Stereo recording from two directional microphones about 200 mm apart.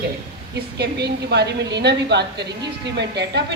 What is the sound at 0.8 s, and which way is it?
A woman's voice, 55° right (ahead or behind).